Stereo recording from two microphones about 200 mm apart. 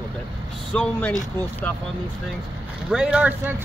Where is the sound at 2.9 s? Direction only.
5° right (ahead or behind).